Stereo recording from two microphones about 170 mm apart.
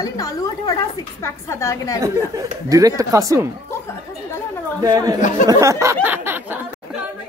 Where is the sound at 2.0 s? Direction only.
20° right (ahead or behind).